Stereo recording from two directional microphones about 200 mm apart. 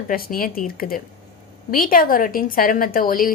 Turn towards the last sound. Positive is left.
turn(degrees=45)  # may be behind; listen again after turning